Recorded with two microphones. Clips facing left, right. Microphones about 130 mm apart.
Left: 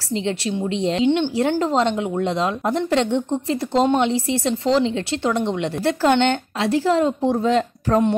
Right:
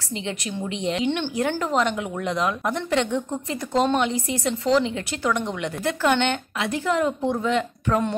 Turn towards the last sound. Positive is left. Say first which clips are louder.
# left 4 dB
turn(degrees=35)  # may be behind; listen again after turning